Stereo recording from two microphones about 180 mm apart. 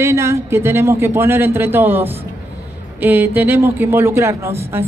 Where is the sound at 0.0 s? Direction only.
15° right (ahead or behind).